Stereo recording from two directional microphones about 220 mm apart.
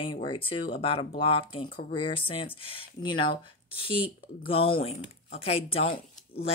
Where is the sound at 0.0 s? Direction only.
20° left (ahead or behind).